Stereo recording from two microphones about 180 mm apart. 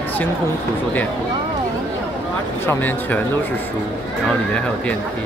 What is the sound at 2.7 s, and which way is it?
Speech, 10° left (ahead or behind).